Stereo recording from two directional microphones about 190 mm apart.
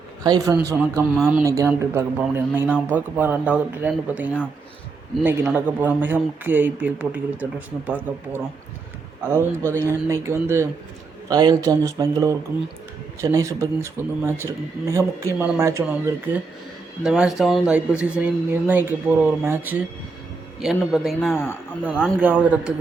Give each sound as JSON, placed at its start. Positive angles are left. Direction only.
{"t": 0.2, "sound": "a man's voice", "side_deg": -20}